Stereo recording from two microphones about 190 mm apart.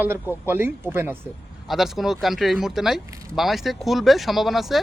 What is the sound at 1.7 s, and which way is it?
Speech, centre (ahead or behind).